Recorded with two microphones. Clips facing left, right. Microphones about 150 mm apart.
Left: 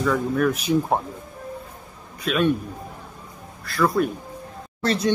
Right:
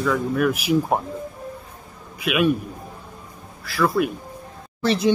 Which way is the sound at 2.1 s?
5° right (ahead or behind).